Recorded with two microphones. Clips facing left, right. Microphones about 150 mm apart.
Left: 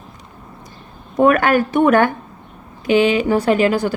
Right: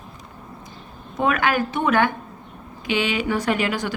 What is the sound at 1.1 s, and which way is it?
A woman's voice, 50° left (ahead or behind).